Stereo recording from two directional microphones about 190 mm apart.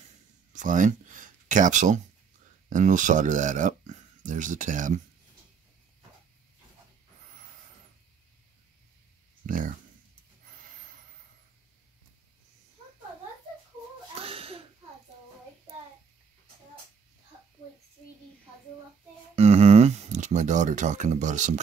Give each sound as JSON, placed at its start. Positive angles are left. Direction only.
{"t": 0.5, "sound": "speech", "side_deg": -45}
{"t": 9.5, "sound": "speech", "side_deg": -45}
{"t": 14.2, "sound": "a sound", "side_deg": -30}
{"t": 19.3, "sound": "speech", "side_deg": -35}